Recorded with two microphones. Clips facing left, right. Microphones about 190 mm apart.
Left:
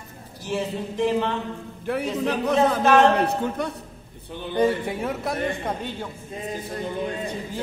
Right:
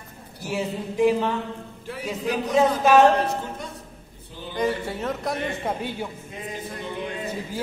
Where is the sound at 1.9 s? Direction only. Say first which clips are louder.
Left 10 dB; 60° left (ahead or behind).